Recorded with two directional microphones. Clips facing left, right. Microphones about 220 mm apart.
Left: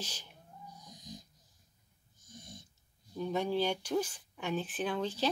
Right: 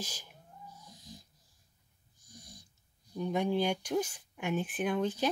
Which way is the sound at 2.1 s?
20° left (ahead or behind).